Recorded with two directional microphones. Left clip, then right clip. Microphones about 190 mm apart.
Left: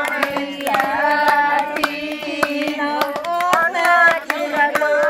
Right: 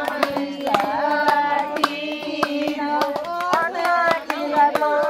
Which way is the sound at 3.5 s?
55° left (ahead or behind).